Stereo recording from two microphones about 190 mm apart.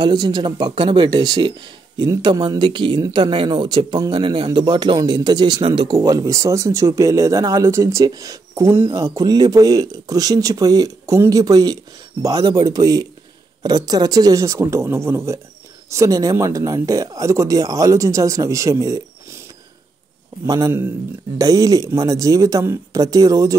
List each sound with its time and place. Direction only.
0.0 s speech: 25° right (ahead or behind)
20.4 s speech: 20° right (ahead or behind)